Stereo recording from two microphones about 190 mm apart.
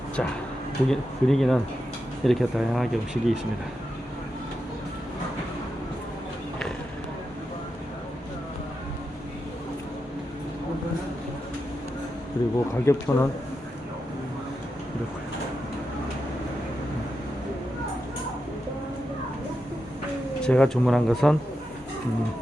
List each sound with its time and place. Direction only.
0.2 s speech: 5° left (ahead or behind)
12.4 s speech: 20° left (ahead or behind)
20.4 s speech: 5° left (ahead or behind)